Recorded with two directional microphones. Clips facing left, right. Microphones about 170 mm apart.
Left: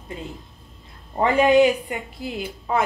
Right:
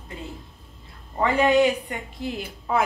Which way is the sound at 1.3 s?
10° left (ahead or behind).